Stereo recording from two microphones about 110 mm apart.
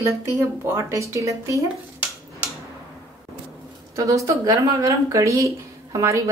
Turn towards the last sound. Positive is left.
turn(degrees=-30)  # may be behind; listen again after turning